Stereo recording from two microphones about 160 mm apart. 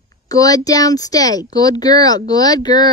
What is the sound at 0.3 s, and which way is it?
Speech, 20° left (ahead or behind).